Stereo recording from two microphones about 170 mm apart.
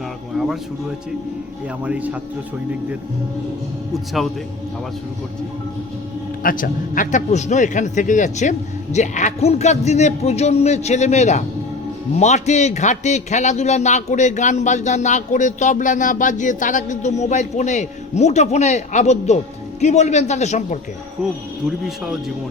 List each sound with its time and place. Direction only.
0.3 s music: 5° right (ahead or behind)
1.8 s a man's voice: 10° right (ahead or behind)
3.9 s speech: centre (ahead or behind)
6.4 s a man's voice: 55° left (ahead or behind)
21.8 s speech: centre (ahead or behind)